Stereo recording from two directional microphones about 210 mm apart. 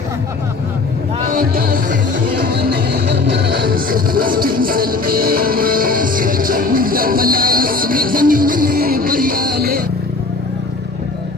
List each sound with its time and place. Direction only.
1.3 s music: 45° right (ahead or behind)